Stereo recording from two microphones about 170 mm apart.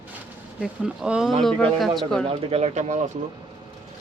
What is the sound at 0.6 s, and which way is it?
A woman's voice, 5° right (ahead or behind).